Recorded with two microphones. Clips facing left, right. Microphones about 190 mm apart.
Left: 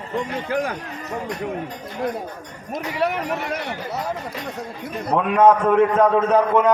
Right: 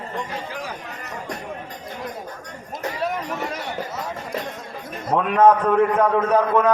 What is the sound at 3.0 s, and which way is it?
A man's voice, 65° left (ahead or behind).